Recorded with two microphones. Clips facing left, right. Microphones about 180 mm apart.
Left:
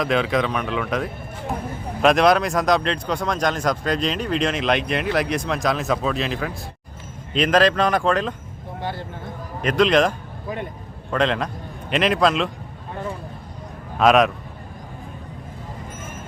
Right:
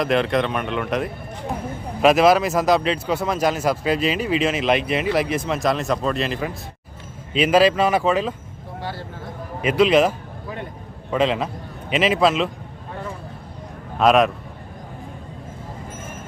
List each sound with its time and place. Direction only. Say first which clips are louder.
0.0 s speech: right 1 dB; centre (ahead or behind)
8.8 s speech: left 2 dB; 20° left (ahead or behind)
9.6 s a man's voice: right 1 dB; 5° right (ahead or behind)
14.0 s speech: even; centre (ahead or behind)